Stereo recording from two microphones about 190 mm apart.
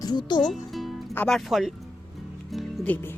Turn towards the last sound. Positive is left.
turn(degrees=10)  # may be behind; listen again after turning